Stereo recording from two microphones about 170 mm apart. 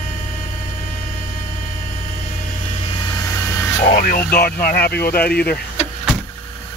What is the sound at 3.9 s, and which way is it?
Speech, 55° left (ahead or behind).